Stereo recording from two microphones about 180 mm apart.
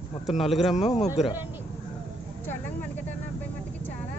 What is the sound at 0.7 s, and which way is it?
Speech, 40° left (ahead or behind).